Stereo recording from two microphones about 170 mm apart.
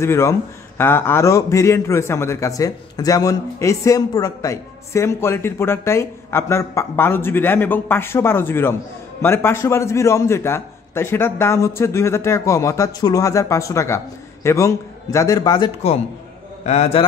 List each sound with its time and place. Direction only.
0.0 s a man's voice: 15° left (ahead or behind)
16.6 s a man's voice: 40° left (ahead or behind)